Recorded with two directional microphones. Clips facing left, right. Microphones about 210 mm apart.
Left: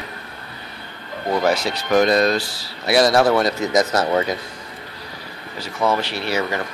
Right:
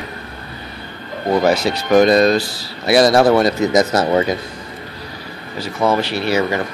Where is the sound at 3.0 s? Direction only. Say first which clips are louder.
Right 3 dB; 35° right (ahead or behind).